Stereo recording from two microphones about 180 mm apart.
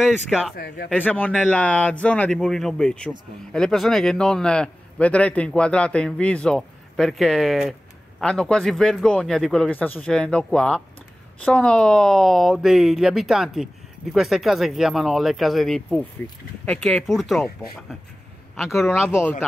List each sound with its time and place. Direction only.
0.0 s a man's voice: 5° right (ahead or behind)
0.6 s speech: 60° left (ahead or behind)
0.9 s a man's voice: 10° left (ahead or behind)